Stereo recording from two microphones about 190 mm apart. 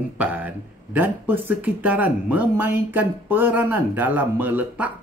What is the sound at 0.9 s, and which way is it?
Speech, 10° right (ahead or behind).